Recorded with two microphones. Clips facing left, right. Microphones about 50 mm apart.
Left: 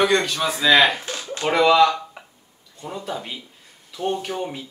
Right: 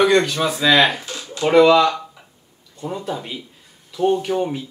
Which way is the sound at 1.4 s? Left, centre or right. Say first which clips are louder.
Right 3 dB; centre.